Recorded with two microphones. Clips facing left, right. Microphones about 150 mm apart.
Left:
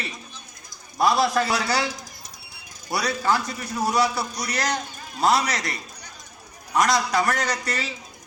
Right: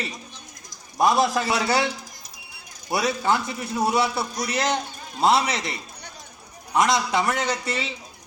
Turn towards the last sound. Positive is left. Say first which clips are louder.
# right 1 dB
turn(degrees=-25)  # may be behind; listen again after turning